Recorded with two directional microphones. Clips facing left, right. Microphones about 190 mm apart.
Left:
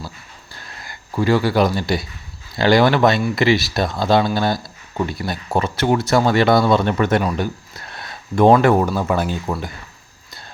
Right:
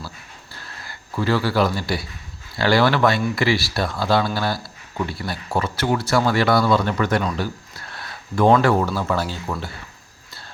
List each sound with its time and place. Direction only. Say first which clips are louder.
0.9 s speech: left 4 dB; 15° left (ahead or behind)